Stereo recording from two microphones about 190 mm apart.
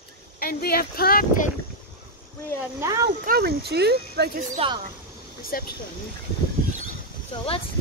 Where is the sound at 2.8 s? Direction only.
15° right (ahead or behind).